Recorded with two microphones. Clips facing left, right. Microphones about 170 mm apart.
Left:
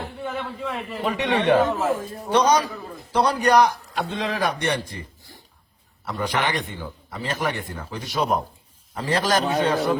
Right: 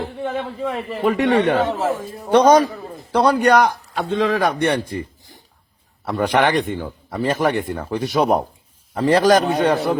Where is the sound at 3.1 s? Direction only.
60° right (ahead or behind).